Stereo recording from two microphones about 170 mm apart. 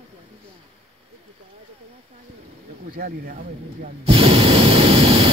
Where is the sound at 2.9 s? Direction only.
60° right (ahead or behind).